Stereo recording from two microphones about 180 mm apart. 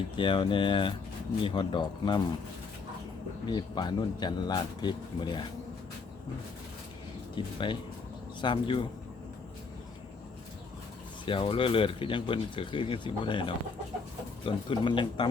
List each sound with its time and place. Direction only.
0.2 s speech: 25° left (ahead or behind)
3.4 s speech: 25° left (ahead or behind)
7.4 s speech: 25° left (ahead or behind)
11.3 s speech: 30° left (ahead or behind)